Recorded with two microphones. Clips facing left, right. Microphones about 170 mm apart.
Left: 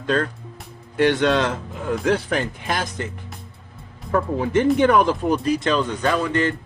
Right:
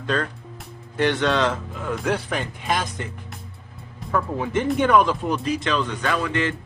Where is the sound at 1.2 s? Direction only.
50° left (ahead or behind).